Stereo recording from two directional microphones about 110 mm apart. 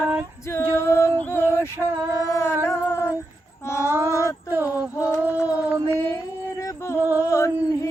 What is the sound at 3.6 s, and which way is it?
Female singing, 25° left (ahead or behind).